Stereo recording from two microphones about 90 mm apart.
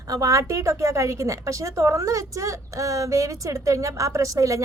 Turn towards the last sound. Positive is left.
turn(degrees=-35)  # may be behind; listen again after turning